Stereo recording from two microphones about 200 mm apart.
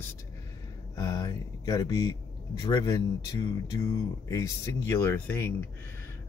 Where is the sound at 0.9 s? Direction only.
20° left (ahead or behind).